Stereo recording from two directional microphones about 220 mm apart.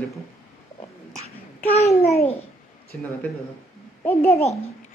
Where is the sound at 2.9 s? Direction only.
5° left (ahead or behind).